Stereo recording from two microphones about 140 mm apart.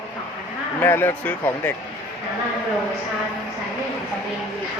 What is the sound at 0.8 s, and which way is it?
Speech, 15° left (ahead or behind).